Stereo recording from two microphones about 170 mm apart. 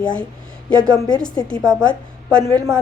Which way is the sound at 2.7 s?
20° right (ahead or behind).